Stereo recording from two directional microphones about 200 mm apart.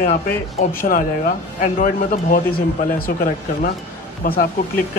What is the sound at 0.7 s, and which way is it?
Speech, 45° left (ahead or behind).